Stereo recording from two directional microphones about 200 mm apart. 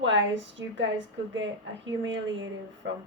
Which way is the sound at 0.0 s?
65° right (ahead or behind).